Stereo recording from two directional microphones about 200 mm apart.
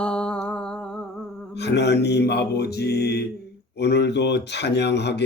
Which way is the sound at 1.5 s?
60° left (ahead or behind).